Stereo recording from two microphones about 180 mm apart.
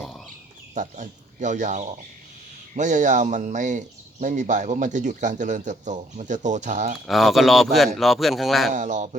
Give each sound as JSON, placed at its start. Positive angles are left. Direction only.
{"t": 0.0, "sound": "a sound", "side_deg": 0}
{"t": 0.7, "sound": "speech", "side_deg": -40}
{"t": 7.1, "sound": "speech", "side_deg": 0}
{"t": 8.7, "sound": "speech", "side_deg": -45}